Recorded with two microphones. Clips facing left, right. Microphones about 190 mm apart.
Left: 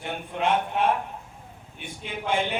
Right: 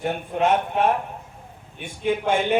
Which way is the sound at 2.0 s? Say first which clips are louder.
Right 6 dB; 45° right (ahead or behind).